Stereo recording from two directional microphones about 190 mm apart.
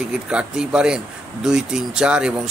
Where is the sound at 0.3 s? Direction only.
5° right (ahead or behind).